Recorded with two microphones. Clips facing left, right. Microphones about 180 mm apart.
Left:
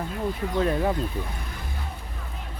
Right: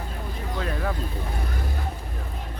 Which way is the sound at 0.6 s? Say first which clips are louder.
Left 6 dB; 25° left (ahead or behind).